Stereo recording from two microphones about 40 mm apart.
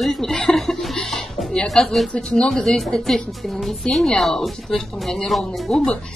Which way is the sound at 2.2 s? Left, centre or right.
Left.